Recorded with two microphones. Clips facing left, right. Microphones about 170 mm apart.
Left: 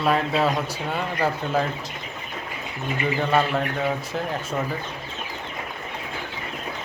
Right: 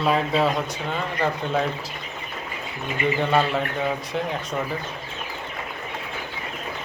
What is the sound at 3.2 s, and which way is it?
A man's voice, centre (ahead or behind).